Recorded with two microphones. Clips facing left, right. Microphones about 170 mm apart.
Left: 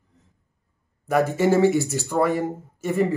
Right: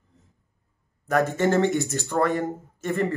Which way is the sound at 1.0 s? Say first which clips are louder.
Left 2 dB; 10° left (ahead or behind).